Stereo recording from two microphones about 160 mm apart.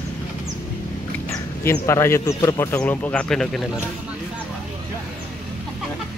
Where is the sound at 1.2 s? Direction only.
15° left (ahead or behind).